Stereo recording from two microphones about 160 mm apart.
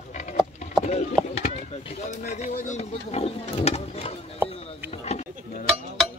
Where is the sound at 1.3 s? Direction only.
40° left (ahead or behind).